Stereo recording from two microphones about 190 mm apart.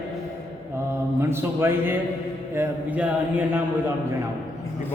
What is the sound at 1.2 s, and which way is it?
Speech, 15° right (ahead or behind).